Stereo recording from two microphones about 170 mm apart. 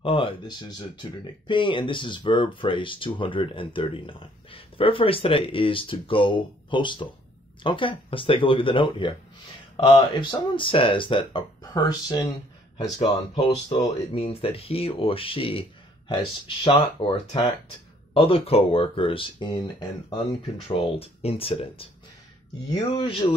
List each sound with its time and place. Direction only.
0.0 s speech: 30° left (ahead or behind)
14.1 s speech: 35° left (ahead or behind)
20.6 s speech: 30° left (ahead or behind)
22.9 s speech: 30° left (ahead or behind)